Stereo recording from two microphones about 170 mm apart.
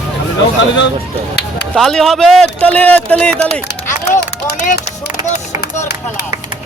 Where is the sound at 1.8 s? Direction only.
Centre (ahead or behind).